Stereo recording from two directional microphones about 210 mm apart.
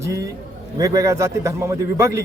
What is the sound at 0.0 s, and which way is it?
A man's voice, 15° right (ahead or behind).